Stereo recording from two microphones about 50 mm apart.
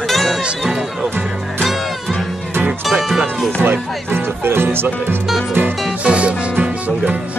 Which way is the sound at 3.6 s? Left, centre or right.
Right.